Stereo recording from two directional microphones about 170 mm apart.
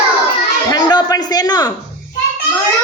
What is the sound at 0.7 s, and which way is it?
Speech, 25° left (ahead or behind).